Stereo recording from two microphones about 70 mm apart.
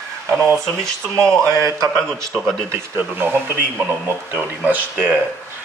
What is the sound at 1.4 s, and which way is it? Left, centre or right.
Speech, right.